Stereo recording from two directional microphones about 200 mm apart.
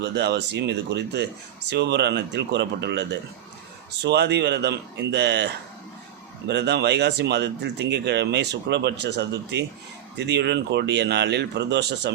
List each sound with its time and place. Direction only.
0.0 s speech: 60° right (ahead or behind)